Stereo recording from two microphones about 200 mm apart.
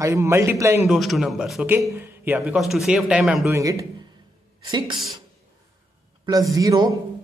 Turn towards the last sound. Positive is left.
turn(degrees=-20)  # may be behind; listen again after turning